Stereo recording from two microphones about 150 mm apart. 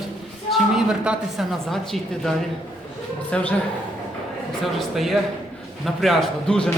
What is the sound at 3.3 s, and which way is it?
Speech, 5° left (ahead or behind).